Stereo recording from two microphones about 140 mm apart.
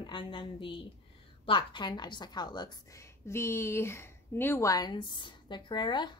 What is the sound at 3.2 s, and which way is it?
A woman's voice, 20° left (ahead or behind).